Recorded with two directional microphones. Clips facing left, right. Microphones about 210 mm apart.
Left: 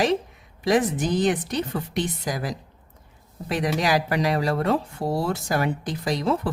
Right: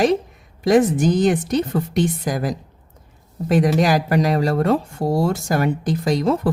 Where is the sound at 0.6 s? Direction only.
45° right (ahead or behind).